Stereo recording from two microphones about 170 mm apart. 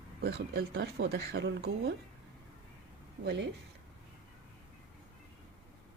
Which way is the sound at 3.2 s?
90° right.